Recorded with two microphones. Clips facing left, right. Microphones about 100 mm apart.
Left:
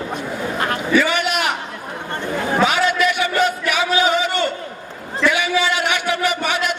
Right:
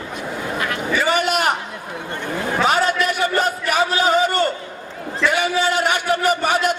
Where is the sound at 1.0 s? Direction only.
40° right (ahead or behind).